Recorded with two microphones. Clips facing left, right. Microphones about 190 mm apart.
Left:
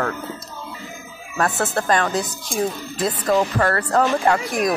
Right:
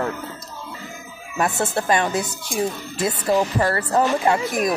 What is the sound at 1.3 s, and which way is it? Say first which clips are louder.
Speech: even; 20° right (ahead or behind).